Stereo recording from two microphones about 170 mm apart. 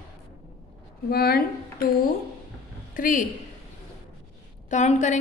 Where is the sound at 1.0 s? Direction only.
65° left (ahead or behind).